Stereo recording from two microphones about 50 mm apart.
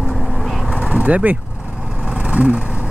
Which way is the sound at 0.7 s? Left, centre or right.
Right.